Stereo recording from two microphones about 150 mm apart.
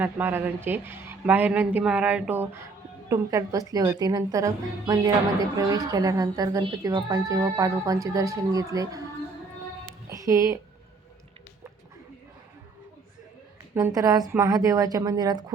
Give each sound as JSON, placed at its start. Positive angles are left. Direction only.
{"t": 0.0, "sound": "a woman's voice", "side_deg": -15}
{"t": 10.1, "sound": "music", "side_deg": -20}
{"t": 13.7, "sound": "a woman's voice", "side_deg": -25}